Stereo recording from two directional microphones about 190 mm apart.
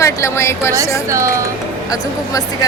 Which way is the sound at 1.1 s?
15° right (ahead or behind).